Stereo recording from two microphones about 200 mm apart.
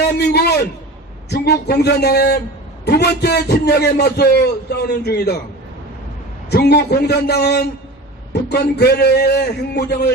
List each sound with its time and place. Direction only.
0.2 s a man's voice: 55° left (ahead or behind)
6.5 s a man's voice: 55° left (ahead or behind)